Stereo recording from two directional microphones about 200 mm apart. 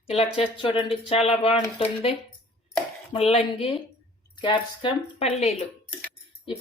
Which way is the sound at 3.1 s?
30° left (ahead or behind).